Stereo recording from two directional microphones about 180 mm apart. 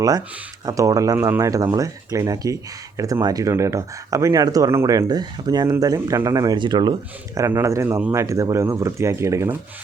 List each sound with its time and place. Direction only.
0.6 s speech: 20° right (ahead or behind)